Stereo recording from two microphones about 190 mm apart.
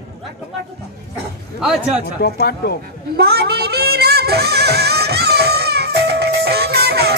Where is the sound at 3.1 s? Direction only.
55° right (ahead or behind).